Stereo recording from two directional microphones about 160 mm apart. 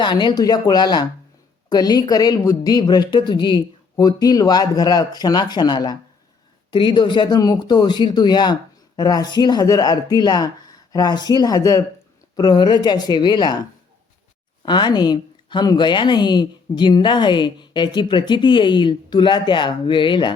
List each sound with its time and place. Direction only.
0.0 s speech: 30° left (ahead or behind)
14.6 s speech: 30° left (ahead or behind)